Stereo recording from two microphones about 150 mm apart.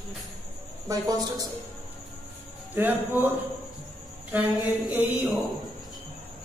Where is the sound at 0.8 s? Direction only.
25° right (ahead or behind).